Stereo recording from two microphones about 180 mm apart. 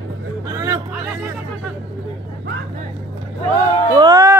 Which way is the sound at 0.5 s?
20° right (ahead or behind).